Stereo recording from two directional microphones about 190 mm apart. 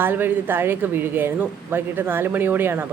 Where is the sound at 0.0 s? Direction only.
10° right (ahead or behind).